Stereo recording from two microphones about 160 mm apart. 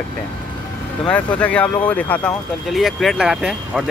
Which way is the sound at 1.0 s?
10° left (ahead or behind).